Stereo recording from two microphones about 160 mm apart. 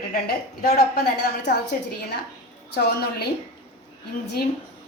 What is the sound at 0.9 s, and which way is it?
Speech, 90° left.